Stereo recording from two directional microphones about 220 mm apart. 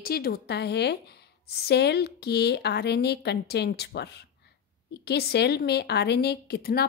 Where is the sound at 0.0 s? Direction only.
45° left (ahead or behind).